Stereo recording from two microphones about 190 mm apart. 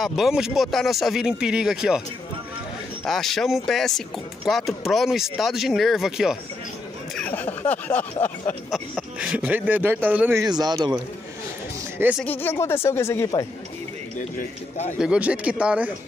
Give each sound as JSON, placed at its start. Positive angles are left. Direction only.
{"t": 0.0, "sound": "speech", "side_deg": 0}
{"t": 3.1, "sound": "speech", "side_deg": 0}
{"t": 7.2, "sound": "speech", "side_deg": 10}
{"t": 8.6, "sound": "speech", "side_deg": 0}
{"t": 10.4, "sound": "speech", "side_deg": -20}
{"t": 12.0, "sound": "speech", "side_deg": -5}
{"t": 12.3, "sound": "speech", "side_deg": 10}
{"t": 15.0, "sound": "speech", "side_deg": -5}